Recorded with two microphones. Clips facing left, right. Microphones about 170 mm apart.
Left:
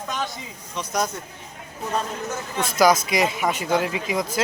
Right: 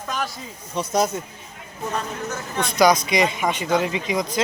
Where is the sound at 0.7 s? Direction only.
30° right (ahead or behind).